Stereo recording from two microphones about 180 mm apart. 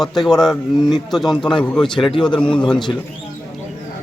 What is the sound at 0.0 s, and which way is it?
A man's voice, centre (ahead or behind).